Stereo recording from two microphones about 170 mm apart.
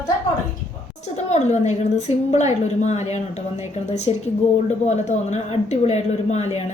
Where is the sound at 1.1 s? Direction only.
40° left (ahead or behind).